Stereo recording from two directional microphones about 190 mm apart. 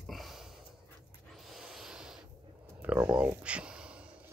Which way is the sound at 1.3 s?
Centre (ahead or behind).